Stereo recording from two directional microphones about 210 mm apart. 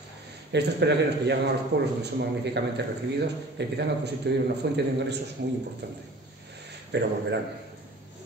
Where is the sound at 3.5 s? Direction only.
55° right (ahead or behind).